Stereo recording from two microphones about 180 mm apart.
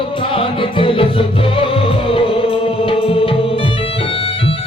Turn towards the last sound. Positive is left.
turn(degrees=30)  # may be behind; listen again after turning